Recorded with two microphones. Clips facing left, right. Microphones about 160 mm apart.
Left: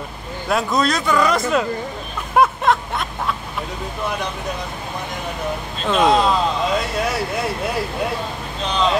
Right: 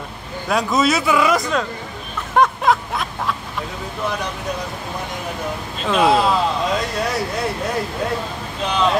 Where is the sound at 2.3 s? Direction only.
5° left (ahead or behind).